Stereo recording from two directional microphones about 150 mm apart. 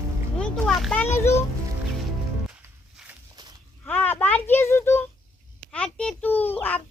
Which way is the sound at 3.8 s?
10° left (ahead or behind).